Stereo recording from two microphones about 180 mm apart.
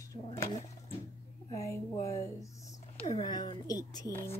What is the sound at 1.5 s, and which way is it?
A woman's voice, 15° left (ahead or behind).